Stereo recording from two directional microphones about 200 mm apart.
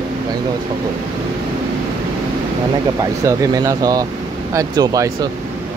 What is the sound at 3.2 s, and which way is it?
Speech, 15° right (ahead or behind).